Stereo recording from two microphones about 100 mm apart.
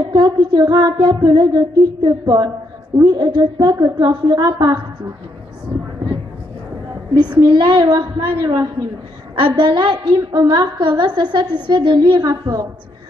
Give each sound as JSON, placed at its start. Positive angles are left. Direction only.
{"t": 0.0, "sound": "child singing", "side_deg": -45}
{"t": 7.4, "sound": "child singing", "side_deg": -55}
{"t": 12.3, "sound": "a woman's voice", "side_deg": -35}